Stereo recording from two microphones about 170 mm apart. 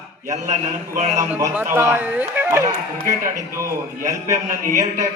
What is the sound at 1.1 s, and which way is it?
Speech, 15° right (ahead or behind).